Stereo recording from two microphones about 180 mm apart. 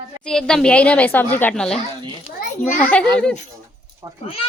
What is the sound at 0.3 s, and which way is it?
Speech, 5° left (ahead or behind).